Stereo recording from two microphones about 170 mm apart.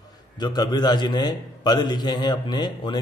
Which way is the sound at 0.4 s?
25° left (ahead or behind).